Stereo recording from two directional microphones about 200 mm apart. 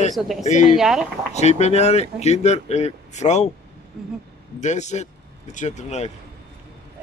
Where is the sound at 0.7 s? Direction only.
5° right (ahead or behind).